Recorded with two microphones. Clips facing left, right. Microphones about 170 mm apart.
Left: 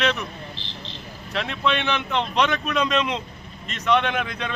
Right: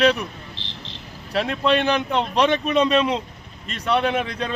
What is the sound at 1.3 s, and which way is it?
Speech, 40° right (ahead or behind).